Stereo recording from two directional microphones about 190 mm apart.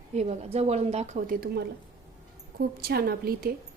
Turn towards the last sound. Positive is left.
turn(degrees=-55)  # may be behind; listen again after turning